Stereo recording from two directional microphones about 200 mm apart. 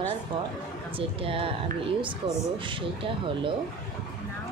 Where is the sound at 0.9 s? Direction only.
25° right (ahead or behind).